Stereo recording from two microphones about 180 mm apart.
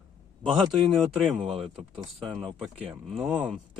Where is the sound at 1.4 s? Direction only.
30° right (ahead or behind).